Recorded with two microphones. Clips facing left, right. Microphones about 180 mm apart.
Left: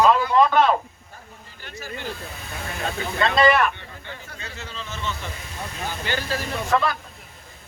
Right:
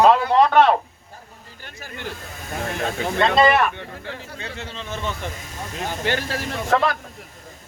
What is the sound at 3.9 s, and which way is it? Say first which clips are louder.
Speech: right 5 dB; 80° right.